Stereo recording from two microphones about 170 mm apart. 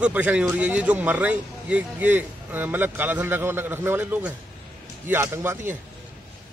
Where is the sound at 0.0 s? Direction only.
10° right (ahead or behind).